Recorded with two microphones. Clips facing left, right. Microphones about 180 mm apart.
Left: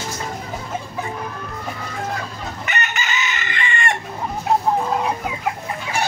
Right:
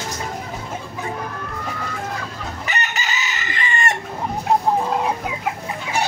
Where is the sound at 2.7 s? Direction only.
35° right (ahead or behind).